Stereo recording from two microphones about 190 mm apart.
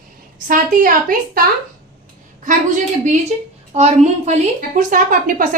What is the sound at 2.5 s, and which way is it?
A woman's voice, 40° right (ahead or behind).